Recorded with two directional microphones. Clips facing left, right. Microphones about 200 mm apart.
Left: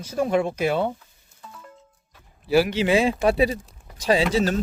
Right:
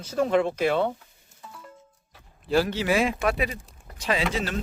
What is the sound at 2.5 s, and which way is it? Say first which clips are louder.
A man's voice: left 4 dB; 10° left (ahead or behind).